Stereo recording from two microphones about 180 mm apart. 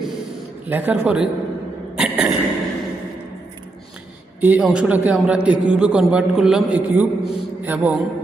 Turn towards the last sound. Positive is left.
turn(degrees=-10)  # may be behind; listen again after turning